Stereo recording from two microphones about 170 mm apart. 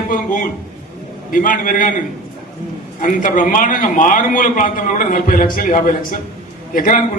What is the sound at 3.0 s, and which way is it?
A man's voice, 50° left (ahead or behind).